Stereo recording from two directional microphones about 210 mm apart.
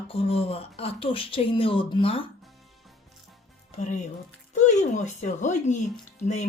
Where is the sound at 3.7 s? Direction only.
35° left (ahead or behind).